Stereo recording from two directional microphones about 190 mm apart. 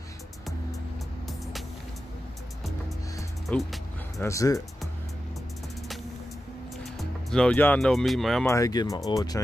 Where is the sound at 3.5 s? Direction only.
Centre (ahead or behind).